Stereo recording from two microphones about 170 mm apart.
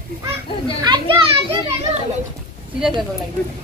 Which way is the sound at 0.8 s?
25° right (ahead or behind).